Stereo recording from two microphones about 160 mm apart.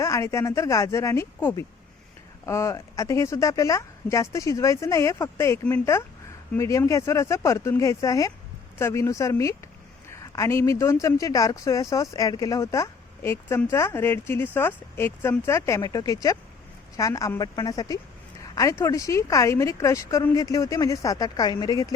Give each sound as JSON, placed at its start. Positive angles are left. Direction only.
{"t": 0.0, "sound": "speech", "side_deg": 20}